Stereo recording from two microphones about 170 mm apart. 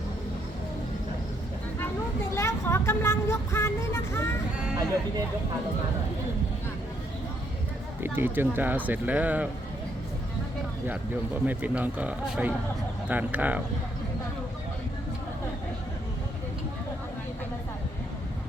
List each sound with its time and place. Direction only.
2.3 s vehicle: 15° left (ahead or behind)
8.0 s speech: 10° right (ahead or behind)
10.8 s speech: 10° right (ahead or behind)